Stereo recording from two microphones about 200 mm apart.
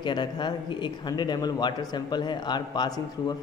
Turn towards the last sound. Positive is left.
turn(degrees=20)  # may be behind; listen again after turning